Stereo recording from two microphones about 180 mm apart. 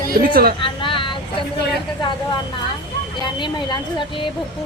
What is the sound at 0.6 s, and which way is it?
Vehicle, 30° left (ahead or behind).